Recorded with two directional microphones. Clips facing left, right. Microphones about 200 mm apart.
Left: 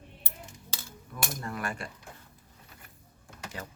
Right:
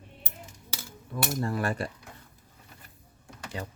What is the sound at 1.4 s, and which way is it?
Cutlery, 35° right (ahead or behind).